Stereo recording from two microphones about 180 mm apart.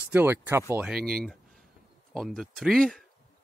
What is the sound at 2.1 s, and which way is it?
Speech, centre (ahead or behind).